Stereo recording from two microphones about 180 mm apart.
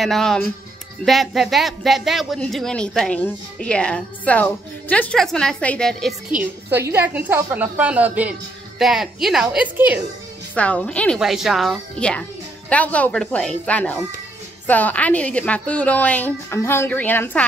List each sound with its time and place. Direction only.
0.0 s speech: centre (ahead or behind)
6.7 s a woman's voice: 10° right (ahead or behind)
10.5 s a woman's voice: 5° left (ahead or behind)